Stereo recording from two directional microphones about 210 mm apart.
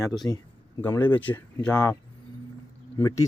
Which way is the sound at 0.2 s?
10° left (ahead or behind).